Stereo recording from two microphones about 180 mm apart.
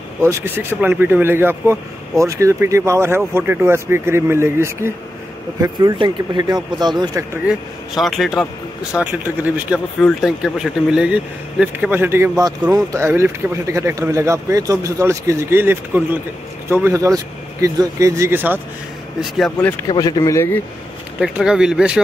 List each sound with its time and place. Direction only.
0.2 s speech: 15° right (ahead or behind)
7.4 s a man's voice: centre (ahead or behind)
9.9 s speech: centre (ahead or behind)
19.3 s a man's voice: centre (ahead or behind)
19.9 s speech: 25° left (ahead or behind)
21.2 s a man's voice: 5° right (ahead or behind)